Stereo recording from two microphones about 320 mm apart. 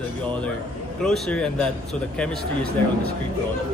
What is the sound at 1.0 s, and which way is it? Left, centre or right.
Speech, centre.